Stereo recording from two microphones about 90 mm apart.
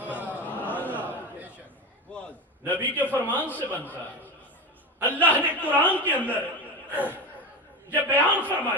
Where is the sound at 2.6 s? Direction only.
20° left (ahead or behind).